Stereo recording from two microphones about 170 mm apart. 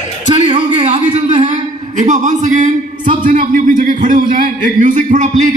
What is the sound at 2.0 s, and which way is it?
A man's voice, 45° right (ahead or behind).